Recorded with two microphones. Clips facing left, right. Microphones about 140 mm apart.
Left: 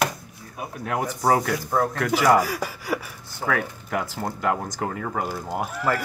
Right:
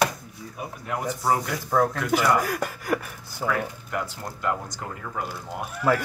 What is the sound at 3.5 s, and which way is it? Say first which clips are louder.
Speech: left 3 dB; 85° left.